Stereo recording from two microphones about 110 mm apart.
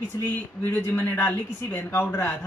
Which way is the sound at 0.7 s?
20° left (ahead or behind).